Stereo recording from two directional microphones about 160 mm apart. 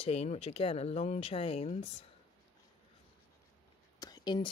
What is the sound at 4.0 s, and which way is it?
Whispering, 25° left (ahead or behind).